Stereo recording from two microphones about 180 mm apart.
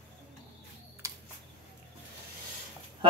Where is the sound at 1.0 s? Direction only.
15° right (ahead or behind).